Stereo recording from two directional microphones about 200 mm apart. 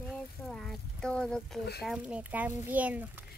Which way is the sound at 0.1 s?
5° left (ahead or behind).